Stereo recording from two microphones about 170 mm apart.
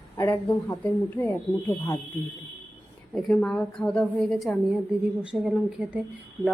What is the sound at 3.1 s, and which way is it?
A woman's voice, 5° left (ahead or behind).